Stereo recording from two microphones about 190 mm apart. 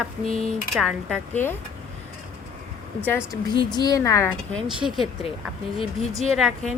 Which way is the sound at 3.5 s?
25° left (ahead or behind).